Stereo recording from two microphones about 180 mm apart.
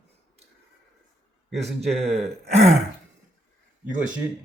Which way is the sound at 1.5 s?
Centre (ahead or behind).